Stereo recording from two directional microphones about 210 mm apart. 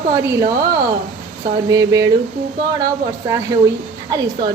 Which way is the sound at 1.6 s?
15° right (ahead or behind).